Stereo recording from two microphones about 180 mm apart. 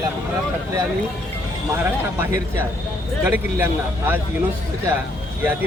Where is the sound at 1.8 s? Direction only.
10° right (ahead or behind).